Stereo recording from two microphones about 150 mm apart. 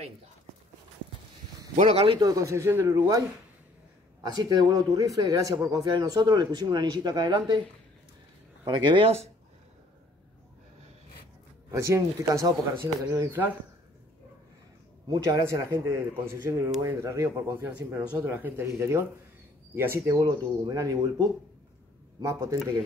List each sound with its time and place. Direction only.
1.8 s speech: 40° right (ahead or behind)
2.1 s a man's voice: 25° right (ahead or behind)
8.6 s speech: 30° right (ahead or behind)
11.7 s a man's voice: 20° right (ahead or behind)
15.0 s a man's voice: 25° right (ahead or behind)
20.2 s a man's voice: 25° right (ahead or behind)